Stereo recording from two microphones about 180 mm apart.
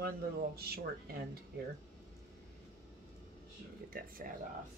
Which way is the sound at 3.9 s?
55° right (ahead or behind).